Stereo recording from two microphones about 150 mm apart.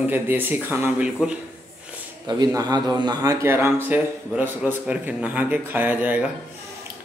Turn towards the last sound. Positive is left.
turn(degrees=-10)  # may be behind; listen again after turning